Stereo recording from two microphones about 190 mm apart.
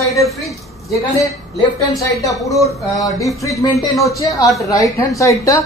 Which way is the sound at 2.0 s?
15° left (ahead or behind).